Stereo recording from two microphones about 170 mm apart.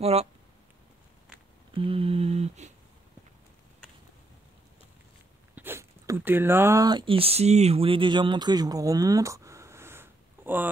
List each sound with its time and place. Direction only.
0.0 s speech: 35° right (ahead or behind)
1.7 s humming: 30° right (ahead or behind)
5.6 s speech: 15° right (ahead or behind)